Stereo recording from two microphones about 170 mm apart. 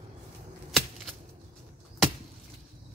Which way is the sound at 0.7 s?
Centre (ahead or behind).